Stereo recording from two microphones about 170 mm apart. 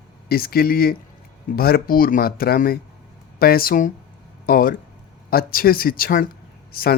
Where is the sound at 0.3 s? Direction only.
60° left (ahead or behind).